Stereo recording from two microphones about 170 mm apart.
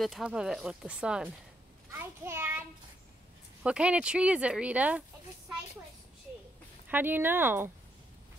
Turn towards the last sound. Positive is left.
turn(degrees=-15)  # may be behind; listen again after turning